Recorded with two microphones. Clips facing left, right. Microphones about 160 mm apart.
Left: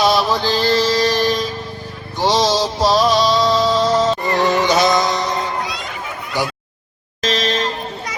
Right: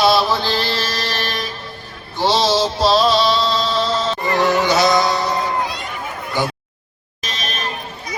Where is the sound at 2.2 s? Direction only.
15° left (ahead or behind).